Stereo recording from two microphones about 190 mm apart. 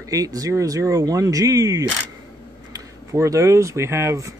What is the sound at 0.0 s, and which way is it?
Speech, 20° right (ahead or behind).